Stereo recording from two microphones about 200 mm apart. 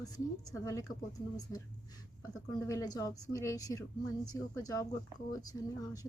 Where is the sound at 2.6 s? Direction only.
15° left (ahead or behind).